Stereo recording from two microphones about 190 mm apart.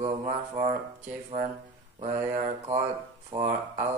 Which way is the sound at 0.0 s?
35° right (ahead or behind).